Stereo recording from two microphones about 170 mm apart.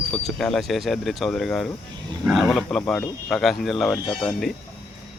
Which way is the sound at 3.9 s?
25° left (ahead or behind).